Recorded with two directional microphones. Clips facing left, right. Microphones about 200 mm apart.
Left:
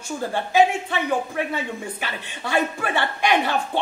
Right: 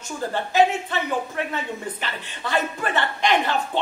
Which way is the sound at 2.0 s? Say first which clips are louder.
Left 1 dB; 10° left (ahead or behind).